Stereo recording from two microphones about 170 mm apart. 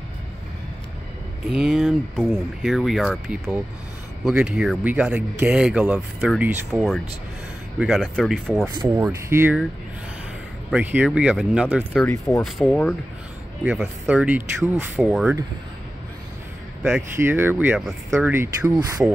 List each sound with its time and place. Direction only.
1.5 s speech: centre (ahead or behind)
8.6 s speech: 15° right (ahead or behind)
10.7 s speech: 10° right (ahead or behind); by 12.9 s 5° left (ahead or behind)
13.7 s speech: 5° right (ahead or behind)
15.0 s speech: centre (ahead or behind)
17.1 s speech: 15° right (ahead or behind)
18.3 s speech: 15° right (ahead or behind)